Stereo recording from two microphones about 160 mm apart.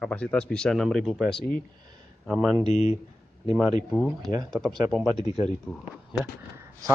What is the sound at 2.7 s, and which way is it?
Speech, 45° left (ahead or behind).